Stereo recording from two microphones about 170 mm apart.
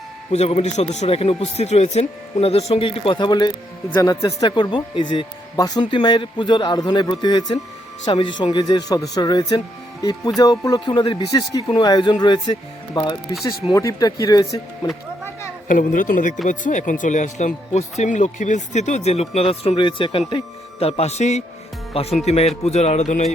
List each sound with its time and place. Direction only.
0.3 s speech: 40° left (ahead or behind); by 14.6 s 20° left (ahead or behind)
15.6 s speech: 50° left (ahead or behind)